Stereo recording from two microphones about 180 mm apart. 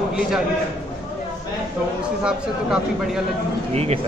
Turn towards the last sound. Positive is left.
turn(degrees=-35)  # may be behind; listen again after turning